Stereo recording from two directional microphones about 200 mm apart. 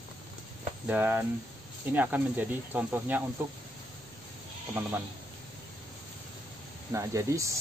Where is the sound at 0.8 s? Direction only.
10° right (ahead or behind).